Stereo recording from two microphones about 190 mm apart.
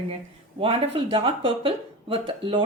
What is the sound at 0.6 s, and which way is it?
Speech, 30° right (ahead or behind).